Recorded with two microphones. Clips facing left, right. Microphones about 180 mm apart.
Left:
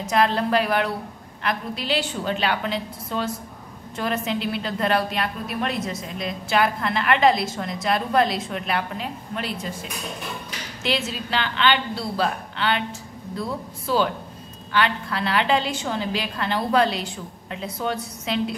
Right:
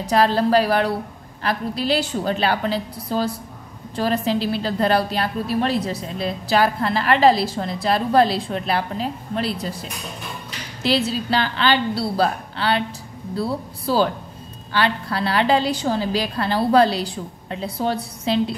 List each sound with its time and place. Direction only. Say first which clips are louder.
0.0 s a woman's voice: right 3 dB; 35° right (ahead or behind)